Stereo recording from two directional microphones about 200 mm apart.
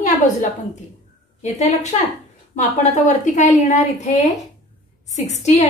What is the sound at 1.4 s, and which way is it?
A woman's voice, 35° left (ahead or behind).